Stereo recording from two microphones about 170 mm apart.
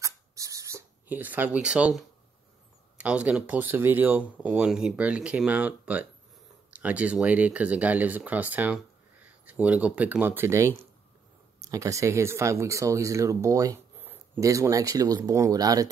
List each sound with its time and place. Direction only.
0.0 s writing: 20° right (ahead or behind)
3.0 s speech: 5° right (ahead or behind)